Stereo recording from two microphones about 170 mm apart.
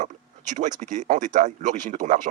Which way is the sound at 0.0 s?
45° right (ahead or behind).